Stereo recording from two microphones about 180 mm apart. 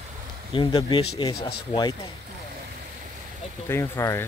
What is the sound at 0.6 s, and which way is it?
Speech, 25° left (ahead or behind).